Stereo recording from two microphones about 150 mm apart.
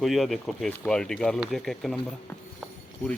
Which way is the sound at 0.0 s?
Centre (ahead or behind).